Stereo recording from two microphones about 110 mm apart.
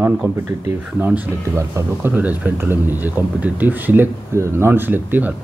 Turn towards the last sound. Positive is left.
turn(degrees=-15)  # may be behind; listen again after turning